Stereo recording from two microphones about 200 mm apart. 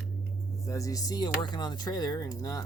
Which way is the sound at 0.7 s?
15° left (ahead or behind).